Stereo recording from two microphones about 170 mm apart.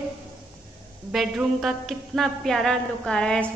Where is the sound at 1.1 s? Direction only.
Centre (ahead or behind).